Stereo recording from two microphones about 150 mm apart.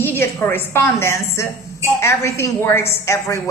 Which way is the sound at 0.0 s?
15° left (ahead or behind).